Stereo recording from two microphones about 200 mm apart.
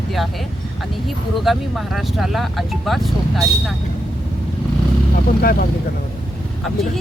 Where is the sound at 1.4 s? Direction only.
Centre (ahead or behind).